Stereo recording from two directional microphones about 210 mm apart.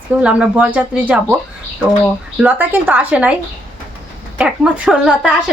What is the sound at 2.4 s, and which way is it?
Speech, 10° right (ahead or behind).